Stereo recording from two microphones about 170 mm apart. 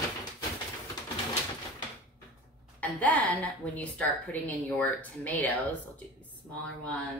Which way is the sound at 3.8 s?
10° left (ahead or behind).